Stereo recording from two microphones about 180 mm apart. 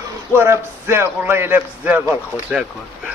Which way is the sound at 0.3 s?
15° right (ahead or behind).